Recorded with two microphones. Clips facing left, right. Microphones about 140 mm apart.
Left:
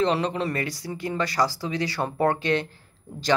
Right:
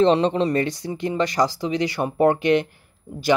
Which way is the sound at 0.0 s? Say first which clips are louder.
Right 6 dB; 25° right (ahead or behind).